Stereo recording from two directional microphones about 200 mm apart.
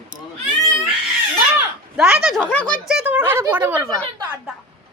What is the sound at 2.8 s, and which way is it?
Speech, 5° right (ahead or behind).